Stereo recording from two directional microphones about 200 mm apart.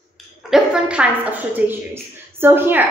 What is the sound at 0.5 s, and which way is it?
A woman's voice, 5° right (ahead or behind).